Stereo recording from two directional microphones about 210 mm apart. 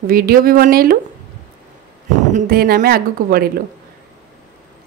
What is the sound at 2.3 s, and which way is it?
A woman's voice, 45° right (ahead or behind).